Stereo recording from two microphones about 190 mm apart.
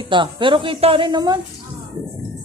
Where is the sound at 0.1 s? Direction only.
25° right (ahead or behind).